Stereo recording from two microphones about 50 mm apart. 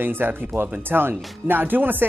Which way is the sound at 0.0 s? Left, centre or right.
Right.